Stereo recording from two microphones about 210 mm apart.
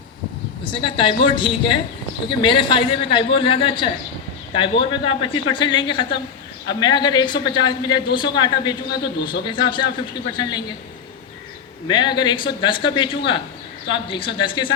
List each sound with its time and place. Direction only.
0.6 s a man's voice: 25° left (ahead or behind)
11.9 s a man's voice: 20° left (ahead or behind)